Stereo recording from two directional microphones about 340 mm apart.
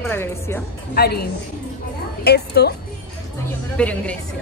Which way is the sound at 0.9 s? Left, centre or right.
Left.